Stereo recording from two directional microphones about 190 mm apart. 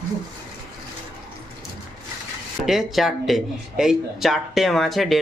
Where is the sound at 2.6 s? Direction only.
Centre (ahead or behind).